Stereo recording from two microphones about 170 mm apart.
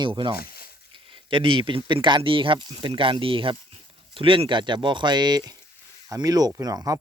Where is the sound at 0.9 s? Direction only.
30° right (ahead or behind).